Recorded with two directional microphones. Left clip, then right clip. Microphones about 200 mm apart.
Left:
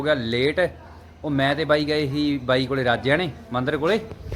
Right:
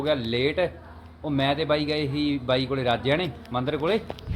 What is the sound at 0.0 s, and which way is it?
A man's voice, 5° left (ahead or behind).